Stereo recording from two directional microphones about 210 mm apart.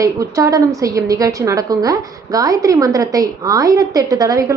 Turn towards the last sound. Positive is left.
turn(degrees=-15)  # may be behind; listen again after turning